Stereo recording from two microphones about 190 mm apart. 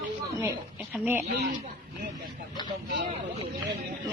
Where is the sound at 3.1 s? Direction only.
25° right (ahead or behind).